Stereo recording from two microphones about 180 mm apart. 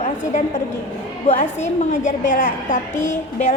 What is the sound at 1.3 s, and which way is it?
A woman's voice, 40° left (ahead or behind).